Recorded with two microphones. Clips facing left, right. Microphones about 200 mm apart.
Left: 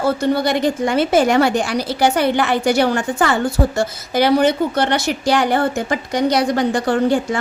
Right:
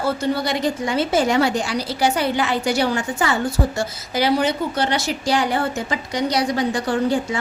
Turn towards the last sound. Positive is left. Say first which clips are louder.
# left 4 dB
turn(degrees=55)  # may be behind; listen again after turning